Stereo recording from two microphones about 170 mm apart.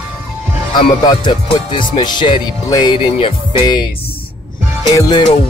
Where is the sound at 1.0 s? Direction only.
25° left (ahead or behind).